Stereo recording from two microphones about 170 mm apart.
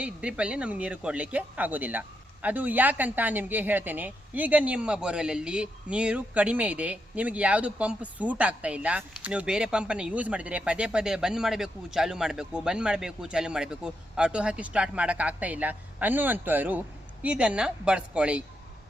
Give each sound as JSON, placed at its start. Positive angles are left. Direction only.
{"t": 0.0, "sound": "speech", "side_deg": -5}